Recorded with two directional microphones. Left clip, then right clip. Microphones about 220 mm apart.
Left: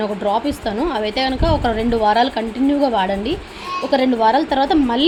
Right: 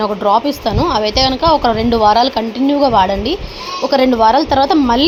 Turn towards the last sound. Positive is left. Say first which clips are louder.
# right 5 dB
turn(degrees=-15)  # may be behind; listen again after turning